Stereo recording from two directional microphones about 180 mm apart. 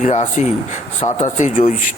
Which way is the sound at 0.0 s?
40° left (ahead or behind).